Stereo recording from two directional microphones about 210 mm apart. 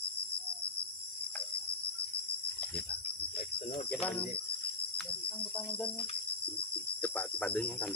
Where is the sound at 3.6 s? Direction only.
30° left (ahead or behind).